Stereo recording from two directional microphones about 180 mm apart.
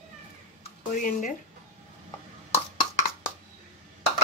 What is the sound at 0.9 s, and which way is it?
Speech, 50° left (ahead or behind).